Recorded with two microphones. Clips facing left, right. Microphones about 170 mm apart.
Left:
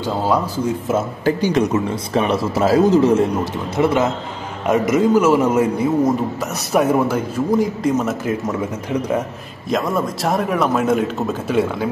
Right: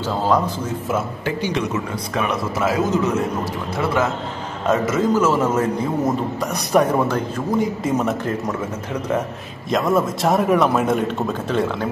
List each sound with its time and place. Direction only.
0.0 s a man's voice: 10° left (ahead or behind)
1.2 s speech: 45° left (ahead or behind)
3.7 s a man's voice: 20° left (ahead or behind); by 8.4 s centre (ahead or behind)
9.7 s a man's voice: centre (ahead or behind)